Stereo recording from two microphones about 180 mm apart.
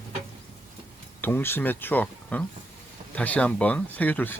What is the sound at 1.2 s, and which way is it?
Speech, 10° left (ahead or behind).